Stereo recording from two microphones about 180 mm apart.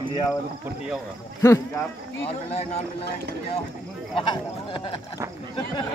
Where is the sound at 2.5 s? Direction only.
35° left (ahead or behind).